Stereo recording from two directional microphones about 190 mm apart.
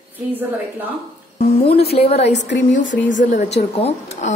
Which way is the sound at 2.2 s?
65° left (ahead or behind).